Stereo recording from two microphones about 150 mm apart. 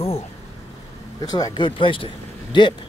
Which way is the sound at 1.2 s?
25° left (ahead or behind).